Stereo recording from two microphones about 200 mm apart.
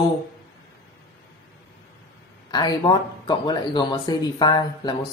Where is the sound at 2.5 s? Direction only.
20° left (ahead or behind).